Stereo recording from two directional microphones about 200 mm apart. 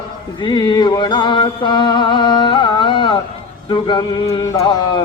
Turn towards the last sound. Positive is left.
turn(degrees=20)  # may be behind; listen again after turning